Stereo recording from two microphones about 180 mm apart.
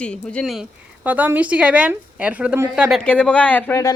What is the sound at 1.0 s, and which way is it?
A woman's voice, 10° right (ahead or behind).